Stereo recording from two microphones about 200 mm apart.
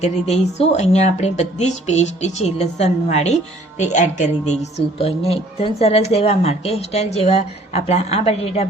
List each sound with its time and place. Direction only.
0.0 s speech: 30° left (ahead or behind)